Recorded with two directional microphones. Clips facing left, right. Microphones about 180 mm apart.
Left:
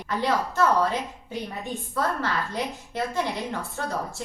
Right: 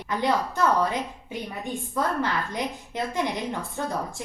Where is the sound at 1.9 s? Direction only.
15° right (ahead or behind).